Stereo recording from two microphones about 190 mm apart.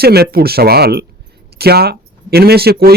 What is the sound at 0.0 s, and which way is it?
Speech, 55° right (ahead or behind).